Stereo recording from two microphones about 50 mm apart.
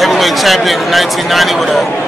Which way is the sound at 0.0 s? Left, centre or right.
Centre.